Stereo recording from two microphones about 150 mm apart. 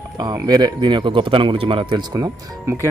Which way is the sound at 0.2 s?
25° right (ahead or behind).